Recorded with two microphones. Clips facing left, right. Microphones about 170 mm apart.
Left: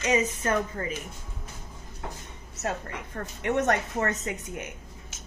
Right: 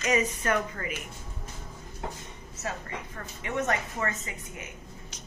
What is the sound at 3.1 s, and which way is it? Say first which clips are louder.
A woman's voice: left 6 dB; 65° left (ahead or behind).